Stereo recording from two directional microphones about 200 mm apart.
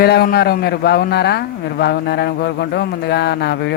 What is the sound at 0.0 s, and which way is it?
A man's voice, 50° left (ahead or behind).